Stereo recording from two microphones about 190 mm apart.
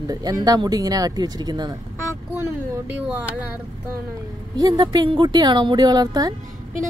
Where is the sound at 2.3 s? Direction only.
10° right (ahead or behind).